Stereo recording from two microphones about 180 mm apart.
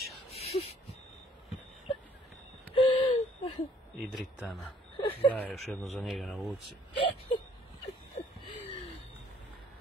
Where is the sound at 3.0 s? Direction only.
35° left (ahead or behind).